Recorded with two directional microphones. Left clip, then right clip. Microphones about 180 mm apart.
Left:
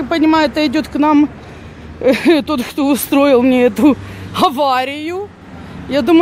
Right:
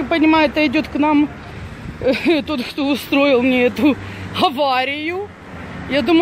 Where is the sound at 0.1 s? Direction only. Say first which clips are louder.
Left 2 dB; 15° left (ahead or behind).